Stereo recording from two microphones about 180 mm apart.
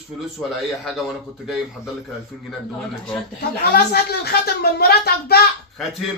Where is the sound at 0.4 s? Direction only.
5° left (ahead or behind).